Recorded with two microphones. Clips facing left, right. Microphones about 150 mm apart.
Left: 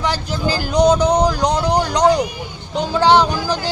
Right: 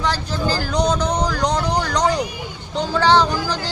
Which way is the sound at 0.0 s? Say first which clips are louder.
Left 1 dB; 10° left (ahead or behind).